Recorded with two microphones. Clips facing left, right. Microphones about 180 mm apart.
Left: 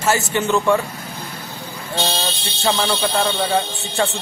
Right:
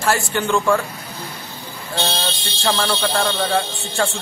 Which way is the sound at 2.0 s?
Centre (ahead or behind).